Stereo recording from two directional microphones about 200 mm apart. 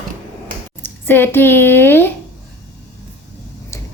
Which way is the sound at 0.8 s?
10° left (ahead or behind).